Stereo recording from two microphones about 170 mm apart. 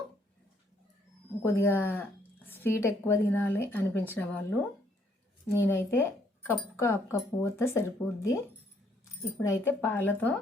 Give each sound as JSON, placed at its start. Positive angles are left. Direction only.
{"t": 1.4, "sound": "speech", "side_deg": 15}
{"t": 9.4, "sound": "speech", "side_deg": 10}